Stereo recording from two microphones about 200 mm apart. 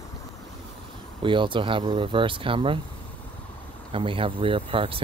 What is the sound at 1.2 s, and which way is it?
Speech, 25° right (ahead or behind).